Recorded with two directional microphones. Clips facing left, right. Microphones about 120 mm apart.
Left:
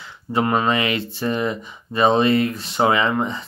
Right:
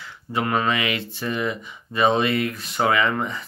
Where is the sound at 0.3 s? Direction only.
30° left (ahead or behind).